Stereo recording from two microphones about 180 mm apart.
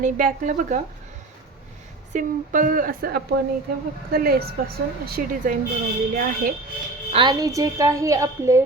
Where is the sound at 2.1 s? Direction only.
50° right (ahead or behind).